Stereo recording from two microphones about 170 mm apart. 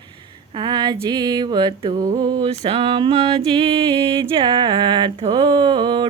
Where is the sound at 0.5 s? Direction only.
25° right (ahead or behind).